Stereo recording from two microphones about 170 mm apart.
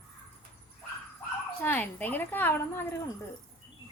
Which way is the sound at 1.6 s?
10° left (ahead or behind).